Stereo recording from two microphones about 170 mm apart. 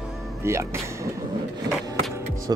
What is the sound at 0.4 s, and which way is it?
Speech, 15° right (ahead or behind).